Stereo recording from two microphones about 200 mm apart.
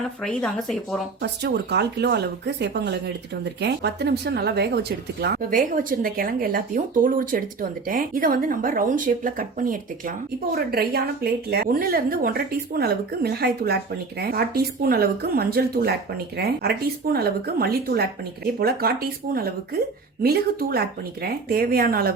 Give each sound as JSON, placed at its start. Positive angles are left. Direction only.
{"t": 0.2, "sound": "speech", "side_deg": 5}
{"t": 1.2, "sound": "speech", "side_deg": -60}